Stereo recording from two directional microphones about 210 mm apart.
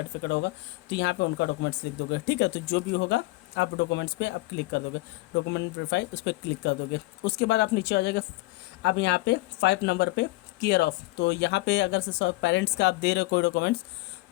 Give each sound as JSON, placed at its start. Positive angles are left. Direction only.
{"t": 0.2, "sound": "speech", "side_deg": 55}